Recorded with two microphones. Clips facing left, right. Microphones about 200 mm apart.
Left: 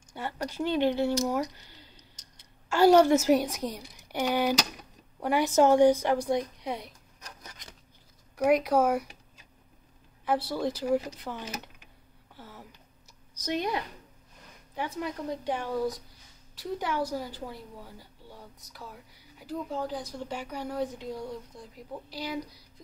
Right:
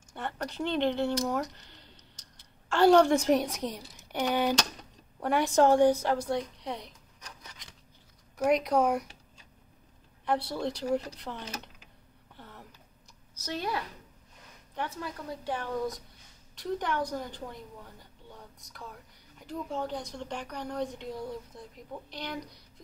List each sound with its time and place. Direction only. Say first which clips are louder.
0.1 s speech: left 1 dB; 5° left (ahead or behind)
2.7 s a woman's voice: left 1 dB; 10° left (ahead or behind)
7.2 s a sound: left 2 dB; 45° left (ahead or behind)
8.4 s a woman's voice: left 2 dB; 5° left (ahead or behind)
10.2 s a woman's voice: left 2 dB; centre (ahead or behind)
12.4 s a sound: left 2 dB; 5° left (ahead or behind)
13.3 s a woman's voice: left 4 dB; 15° left (ahead or behind)